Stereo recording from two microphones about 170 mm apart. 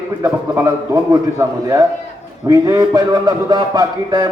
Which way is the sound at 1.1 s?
20° right (ahead or behind).